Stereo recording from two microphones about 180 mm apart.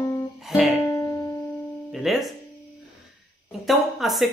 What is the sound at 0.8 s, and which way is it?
Music, 15° left (ahead or behind).